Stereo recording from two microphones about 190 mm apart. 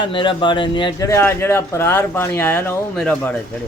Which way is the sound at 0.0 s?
25° left (ahead or behind).